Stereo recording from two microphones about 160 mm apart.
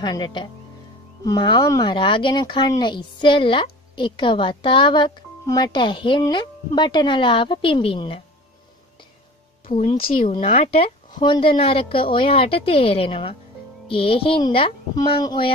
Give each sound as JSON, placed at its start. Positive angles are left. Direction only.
{"t": 0.0, "sound": "a woman's voice", "side_deg": 25}
{"t": 9.7, "sound": "a woman's voice", "side_deg": 45}